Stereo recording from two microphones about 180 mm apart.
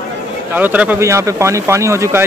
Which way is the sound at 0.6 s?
10° right (ahead or behind).